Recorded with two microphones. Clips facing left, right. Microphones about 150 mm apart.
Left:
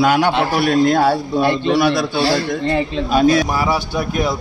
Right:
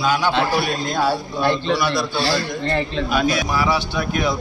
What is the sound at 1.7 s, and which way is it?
Speech, 60° left (ahead or behind).